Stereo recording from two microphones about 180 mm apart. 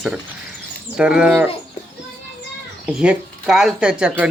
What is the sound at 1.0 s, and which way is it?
Speech, 5° right (ahead or behind).